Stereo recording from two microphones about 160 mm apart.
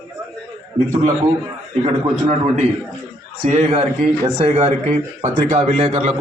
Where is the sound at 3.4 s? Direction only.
45° right (ahead or behind).